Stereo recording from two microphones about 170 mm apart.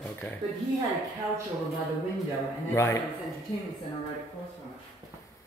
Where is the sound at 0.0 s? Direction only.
5° left (ahead or behind).